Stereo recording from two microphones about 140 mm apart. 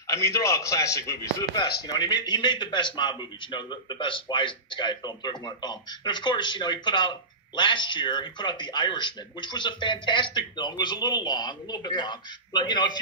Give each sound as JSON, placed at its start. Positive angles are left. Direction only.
{"t": 0.0, "sound": "a man's voice", "side_deg": 20}